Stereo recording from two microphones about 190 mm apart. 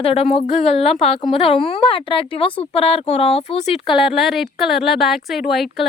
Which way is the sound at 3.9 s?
Centre (ahead or behind).